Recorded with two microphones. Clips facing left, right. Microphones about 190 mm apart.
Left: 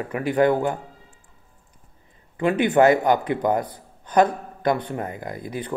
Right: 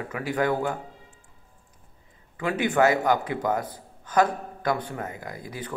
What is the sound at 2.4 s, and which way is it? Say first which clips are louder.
Speech: left 5 dB; 25° left (ahead or behind).